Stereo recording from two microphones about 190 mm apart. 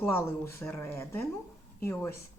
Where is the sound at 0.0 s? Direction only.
10° left (ahead or behind).